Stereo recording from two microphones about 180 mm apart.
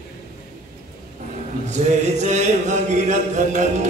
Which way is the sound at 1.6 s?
40° right (ahead or behind).